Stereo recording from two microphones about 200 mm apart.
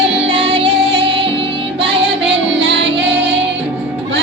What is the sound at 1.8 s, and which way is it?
Music, 60° right (ahead or behind).